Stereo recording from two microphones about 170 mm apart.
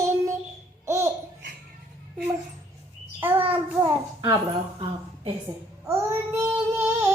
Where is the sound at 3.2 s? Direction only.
10° right (ahead or behind).